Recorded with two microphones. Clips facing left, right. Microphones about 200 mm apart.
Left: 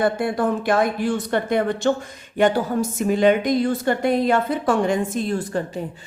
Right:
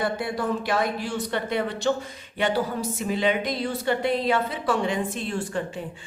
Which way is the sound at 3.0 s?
50° left (ahead or behind).